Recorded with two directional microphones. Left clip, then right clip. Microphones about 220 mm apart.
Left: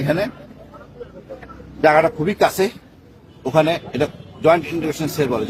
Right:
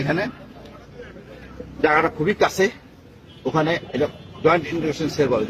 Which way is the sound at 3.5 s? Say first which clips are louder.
Left 5 dB; 25° left (ahead or behind).